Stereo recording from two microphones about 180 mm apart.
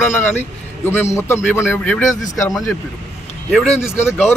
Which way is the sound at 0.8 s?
15° left (ahead or behind).